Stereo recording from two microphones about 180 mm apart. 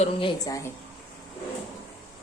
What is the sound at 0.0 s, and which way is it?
Speech, 30° left (ahead or behind).